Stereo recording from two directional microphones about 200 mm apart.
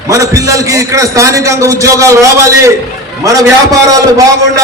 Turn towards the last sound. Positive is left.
turn(degrees=-15)  # may be behind; listen again after turning